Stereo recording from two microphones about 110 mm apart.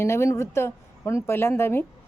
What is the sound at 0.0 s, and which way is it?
A woman's voice, 25° left (ahead or behind).